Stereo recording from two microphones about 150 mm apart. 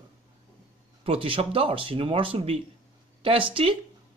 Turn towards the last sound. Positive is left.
turn(degrees=-40)  # may be behind; listen again after turning